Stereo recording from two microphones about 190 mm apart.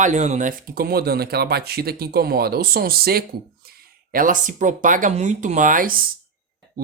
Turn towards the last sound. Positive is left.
turn(degrees=-45)  # may be behind; listen again after turning